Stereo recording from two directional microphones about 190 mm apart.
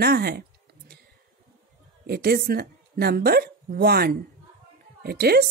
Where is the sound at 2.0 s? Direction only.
55° right (ahead or behind).